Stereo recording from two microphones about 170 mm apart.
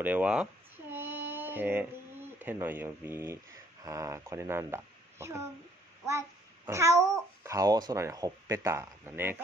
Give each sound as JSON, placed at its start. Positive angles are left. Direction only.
{"t": 0.0, "sound": "speech", "side_deg": -10}
{"t": 0.9, "sound": "child singing", "side_deg": -10}
{"t": 2.3, "sound": "a child's voice", "side_deg": -10}